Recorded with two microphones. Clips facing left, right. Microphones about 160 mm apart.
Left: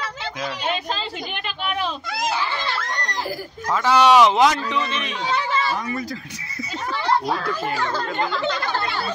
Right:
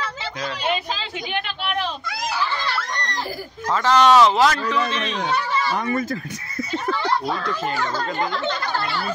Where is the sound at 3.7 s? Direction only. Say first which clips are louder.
Even; 10° left (ahead or behind).